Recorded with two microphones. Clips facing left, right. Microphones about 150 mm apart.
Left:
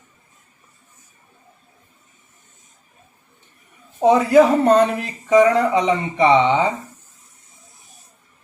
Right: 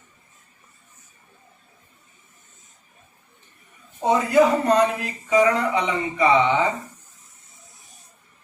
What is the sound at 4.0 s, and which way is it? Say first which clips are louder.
Speech: left 5 dB; 75° left (ahead or behind).